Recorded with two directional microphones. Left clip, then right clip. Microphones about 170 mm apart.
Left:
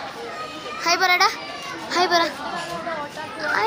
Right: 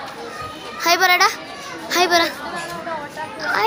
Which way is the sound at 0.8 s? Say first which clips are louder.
Right 3 dB; 20° right (ahead or behind).